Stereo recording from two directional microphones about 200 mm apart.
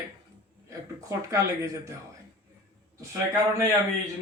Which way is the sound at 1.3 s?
15° right (ahead or behind).